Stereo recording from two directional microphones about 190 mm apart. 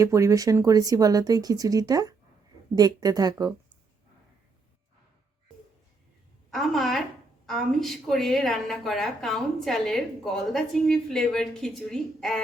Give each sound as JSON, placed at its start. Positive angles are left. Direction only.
{"t": 0.0, "sound": "speech", "side_deg": -15}
{"t": 6.5, "sound": "a woman's voice", "side_deg": 0}